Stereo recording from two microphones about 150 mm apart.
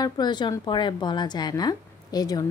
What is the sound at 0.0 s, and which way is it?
Speech, 30° left (ahead or behind).